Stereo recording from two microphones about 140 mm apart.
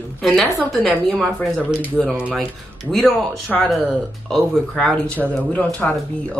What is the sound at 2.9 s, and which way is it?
A woman's voice, centre (ahead or behind).